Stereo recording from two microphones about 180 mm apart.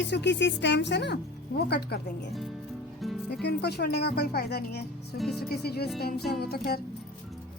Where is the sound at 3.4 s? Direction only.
65° left (ahead or behind).